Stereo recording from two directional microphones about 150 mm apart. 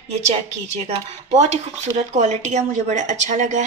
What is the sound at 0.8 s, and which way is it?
A woman's voice, 50° right (ahead or behind).